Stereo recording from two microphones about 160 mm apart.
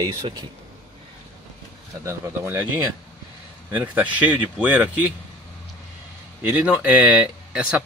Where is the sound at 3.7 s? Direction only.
10° right (ahead or behind).